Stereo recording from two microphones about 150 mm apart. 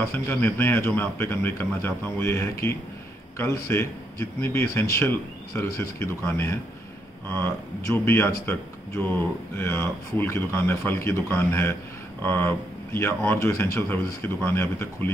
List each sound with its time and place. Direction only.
0.1 s a man's voice: 10° left (ahead or behind)